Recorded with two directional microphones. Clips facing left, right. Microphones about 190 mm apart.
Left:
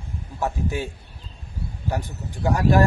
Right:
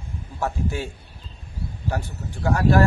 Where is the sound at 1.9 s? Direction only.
15° left (ahead or behind).